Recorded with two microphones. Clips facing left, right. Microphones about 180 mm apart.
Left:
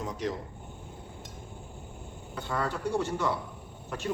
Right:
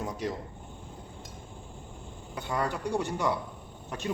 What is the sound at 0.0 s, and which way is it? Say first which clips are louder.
Speech: even; 10° right (ahead or behind).